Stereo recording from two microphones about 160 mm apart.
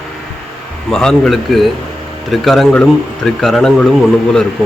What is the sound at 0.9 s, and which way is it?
Speech, 5° left (ahead or behind).